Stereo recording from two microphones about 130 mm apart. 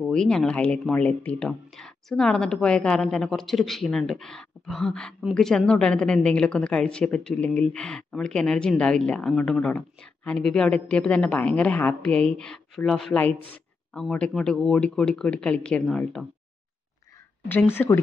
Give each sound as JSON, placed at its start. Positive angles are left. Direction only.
{"t": 0.0, "sound": "a woman's voice", "side_deg": 5}
{"t": 17.5, "sound": "a woman's voice", "side_deg": 15}